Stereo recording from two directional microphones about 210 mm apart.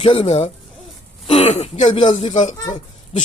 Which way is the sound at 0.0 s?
30° left (ahead or behind).